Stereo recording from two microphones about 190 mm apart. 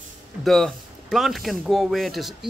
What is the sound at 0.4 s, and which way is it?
Speech, centre (ahead or behind).